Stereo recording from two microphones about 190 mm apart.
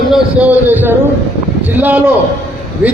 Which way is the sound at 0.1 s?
5° right (ahead or behind).